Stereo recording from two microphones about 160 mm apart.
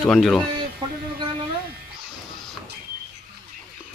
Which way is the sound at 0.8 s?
30° right (ahead or behind).